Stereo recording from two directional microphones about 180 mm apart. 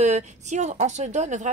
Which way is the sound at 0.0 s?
40° right (ahead or behind).